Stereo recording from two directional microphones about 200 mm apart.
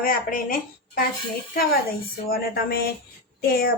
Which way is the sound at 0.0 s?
45° left (ahead or behind).